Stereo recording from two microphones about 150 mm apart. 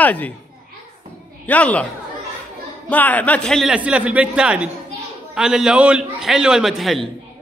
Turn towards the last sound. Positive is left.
turn(degrees=0)  # may be behind; listen again after turning